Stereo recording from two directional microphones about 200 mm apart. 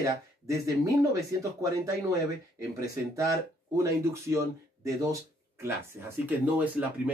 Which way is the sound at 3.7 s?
15° right (ahead or behind).